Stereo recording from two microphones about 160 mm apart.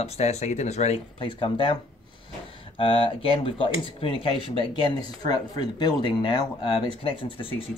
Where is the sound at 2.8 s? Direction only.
35° left (ahead or behind).